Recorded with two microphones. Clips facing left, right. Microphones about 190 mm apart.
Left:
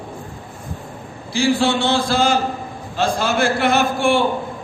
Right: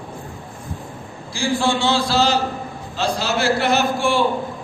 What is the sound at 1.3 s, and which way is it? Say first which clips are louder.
A man's voice: left 3 dB; 65° left (ahead or behind).